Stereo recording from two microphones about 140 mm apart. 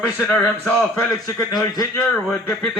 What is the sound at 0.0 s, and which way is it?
A man's voice, 15° left (ahead or behind).